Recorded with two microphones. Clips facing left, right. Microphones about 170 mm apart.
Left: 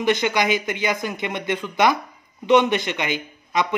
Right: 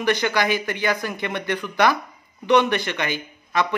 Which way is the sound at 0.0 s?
20° left (ahead or behind).